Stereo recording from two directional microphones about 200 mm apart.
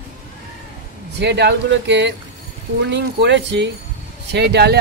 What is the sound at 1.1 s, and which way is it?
Speech, 60° right (ahead or behind).